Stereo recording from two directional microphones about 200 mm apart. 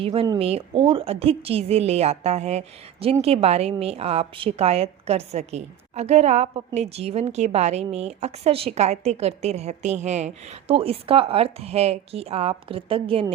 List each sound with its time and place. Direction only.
0.0 s a woman's voice: 25° right (ahead or behind)